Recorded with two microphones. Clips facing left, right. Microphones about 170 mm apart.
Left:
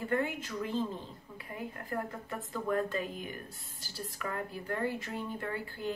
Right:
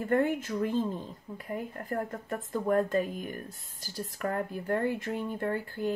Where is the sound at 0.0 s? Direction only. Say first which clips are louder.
Right 6 dB; 50° right (ahead or behind).